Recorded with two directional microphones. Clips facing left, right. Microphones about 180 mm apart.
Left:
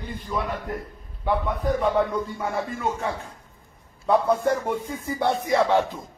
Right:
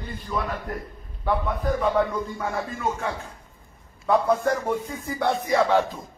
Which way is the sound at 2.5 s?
5° left (ahead or behind).